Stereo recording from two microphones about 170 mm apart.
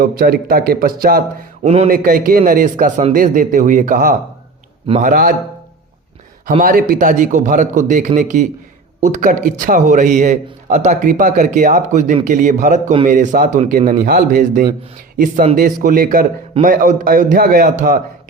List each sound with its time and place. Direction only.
0.0 s a man's voice: 60° right (ahead or behind)
1.6 s speech: 35° right (ahead or behind)
1.9 s a man's voice: 55° right (ahead or behind)
6.6 s a man's voice: 55° right (ahead or behind)